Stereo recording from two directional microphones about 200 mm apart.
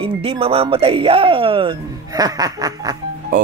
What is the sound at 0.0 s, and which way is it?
Speech, 30° right (ahead or behind).